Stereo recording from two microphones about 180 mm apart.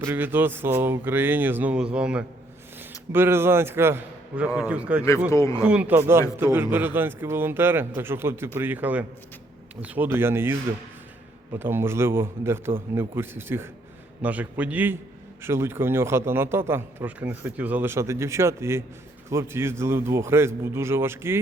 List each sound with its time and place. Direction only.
0.0 s a man's voice: 10° right (ahead or behind)
5.3 s speech: 15° left (ahead or behind)
5.6 s a man's voice: 5° right (ahead or behind)